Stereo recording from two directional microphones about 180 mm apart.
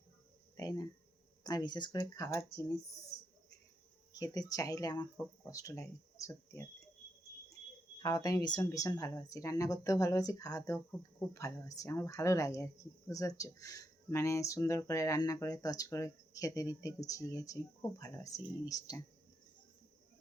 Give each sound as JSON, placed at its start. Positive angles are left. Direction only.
{"t": 0.5, "sound": "a sound", "side_deg": 20}
{"t": 1.5, "sound": "speech", "side_deg": 20}
{"t": 4.1, "sound": "speech", "side_deg": 20}
{"t": 7.9, "sound": "speech", "side_deg": 20}